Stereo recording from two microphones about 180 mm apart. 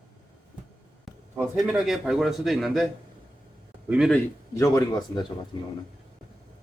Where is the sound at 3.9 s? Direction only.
Centre (ahead or behind).